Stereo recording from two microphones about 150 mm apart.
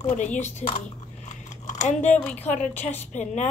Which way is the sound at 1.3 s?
50° left (ahead or behind).